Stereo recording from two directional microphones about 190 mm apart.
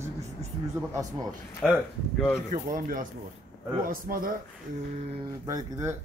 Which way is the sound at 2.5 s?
45° right (ahead or behind).